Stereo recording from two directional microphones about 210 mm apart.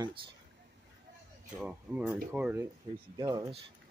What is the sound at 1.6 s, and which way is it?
Speech, 5° right (ahead or behind).